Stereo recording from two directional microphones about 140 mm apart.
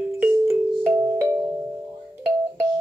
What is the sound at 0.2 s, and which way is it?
Music, 15° right (ahead or behind).